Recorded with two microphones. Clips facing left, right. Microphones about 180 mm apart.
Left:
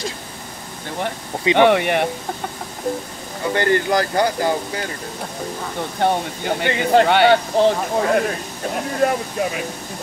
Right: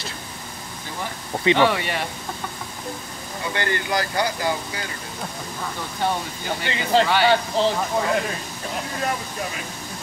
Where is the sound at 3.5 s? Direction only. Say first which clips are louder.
Left 7 dB; 45° left (ahead or behind).